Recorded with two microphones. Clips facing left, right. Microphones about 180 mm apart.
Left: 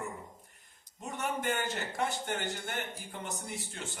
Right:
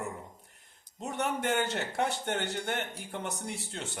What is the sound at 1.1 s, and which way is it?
A man's voice, 70° right (ahead or behind).